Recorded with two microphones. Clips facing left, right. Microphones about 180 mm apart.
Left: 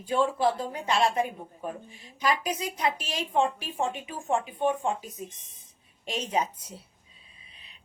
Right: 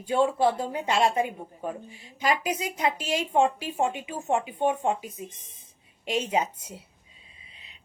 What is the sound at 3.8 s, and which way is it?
Speech, 20° right (ahead or behind).